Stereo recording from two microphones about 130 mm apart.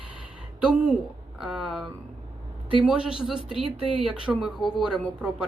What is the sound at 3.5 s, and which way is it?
Speech, 45° right (ahead or behind).